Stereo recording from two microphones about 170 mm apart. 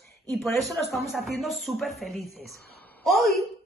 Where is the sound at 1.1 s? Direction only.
Centre (ahead or behind).